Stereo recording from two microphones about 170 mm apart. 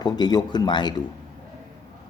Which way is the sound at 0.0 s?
25° left (ahead or behind).